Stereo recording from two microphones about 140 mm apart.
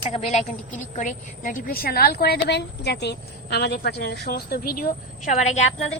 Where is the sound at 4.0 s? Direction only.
90° left.